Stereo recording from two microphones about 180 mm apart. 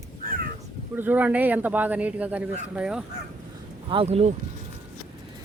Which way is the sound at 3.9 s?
30° right (ahead or behind).